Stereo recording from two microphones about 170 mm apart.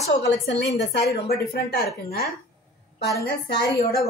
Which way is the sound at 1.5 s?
65° left (ahead or behind).